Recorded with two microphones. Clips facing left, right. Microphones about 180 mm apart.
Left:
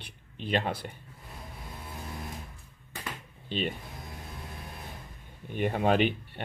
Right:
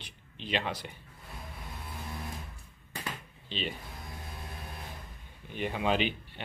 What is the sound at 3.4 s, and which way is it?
Speech, 50° left (ahead or behind).